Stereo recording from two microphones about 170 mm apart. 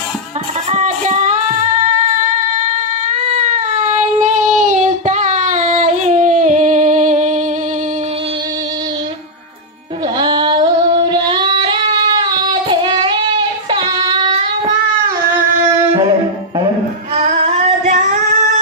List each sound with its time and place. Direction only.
0.7 s music: 40° right (ahead or behind)
4.2 s child singing: 45° right (ahead or behind)
10.2 s female singing: 25° right (ahead or behind)
11.1 s child singing: 25° right (ahead or behind)
17.2 s singing: 45° right (ahead or behind)